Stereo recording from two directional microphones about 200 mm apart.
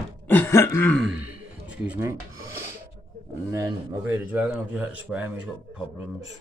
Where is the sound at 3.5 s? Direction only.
15° right (ahead or behind).